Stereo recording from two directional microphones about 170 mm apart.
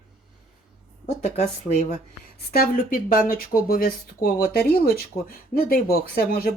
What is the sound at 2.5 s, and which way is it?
Speech, 60° left (ahead or behind).